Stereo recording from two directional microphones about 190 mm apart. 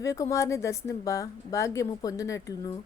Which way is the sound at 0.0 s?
15° left (ahead or behind).